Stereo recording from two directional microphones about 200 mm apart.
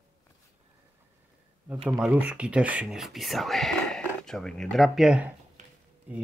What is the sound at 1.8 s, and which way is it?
Speech, 5° right (ahead or behind).